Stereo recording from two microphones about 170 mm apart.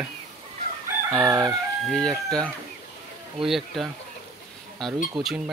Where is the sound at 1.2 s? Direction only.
20° right (ahead or behind).